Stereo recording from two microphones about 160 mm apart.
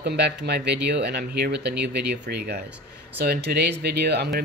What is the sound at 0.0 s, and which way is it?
Speech, 90° right.